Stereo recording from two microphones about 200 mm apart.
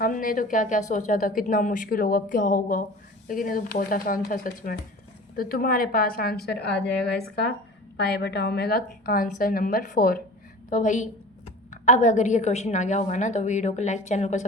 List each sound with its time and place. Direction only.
0.0 s a woman's voice: 45° left (ahead or behind)
7.9 s a woman's voice: 55° left (ahead or behind); by 14.4 s 35° left (ahead or behind)